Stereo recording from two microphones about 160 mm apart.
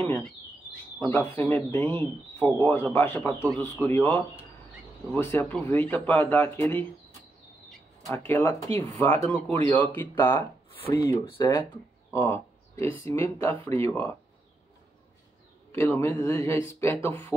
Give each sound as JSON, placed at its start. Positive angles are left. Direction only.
{"t": 0.0, "sound": "speech", "side_deg": 10}
{"t": 8.1, "sound": "speech", "side_deg": 15}
{"t": 11.7, "sound": "a sound", "side_deg": 15}
{"t": 13.0, "sound": "speech", "side_deg": 15}
{"t": 15.7, "sound": "speech", "side_deg": 15}